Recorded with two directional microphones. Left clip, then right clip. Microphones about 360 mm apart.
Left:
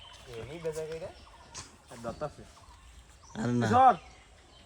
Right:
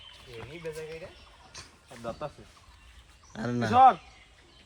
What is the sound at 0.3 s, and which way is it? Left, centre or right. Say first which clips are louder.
Speech: left 3 dB; centre.